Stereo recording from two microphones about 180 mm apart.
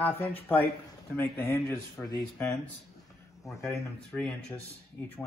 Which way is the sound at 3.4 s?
5° left (ahead or behind).